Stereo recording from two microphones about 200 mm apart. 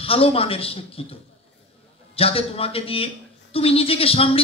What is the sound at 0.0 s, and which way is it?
A man's voice, 30° left (ahead or behind).